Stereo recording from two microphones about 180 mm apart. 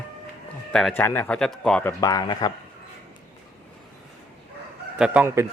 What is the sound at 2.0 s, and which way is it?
Speech, 20° left (ahead or behind).